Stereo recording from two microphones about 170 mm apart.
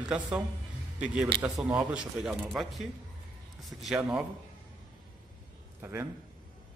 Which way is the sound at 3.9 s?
15° right (ahead or behind).